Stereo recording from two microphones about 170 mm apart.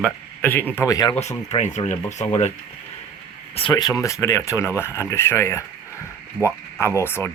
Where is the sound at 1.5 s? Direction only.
45° left (ahead or behind).